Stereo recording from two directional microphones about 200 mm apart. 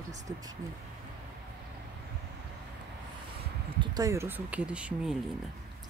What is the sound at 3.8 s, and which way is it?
Speech, 15° right (ahead or behind).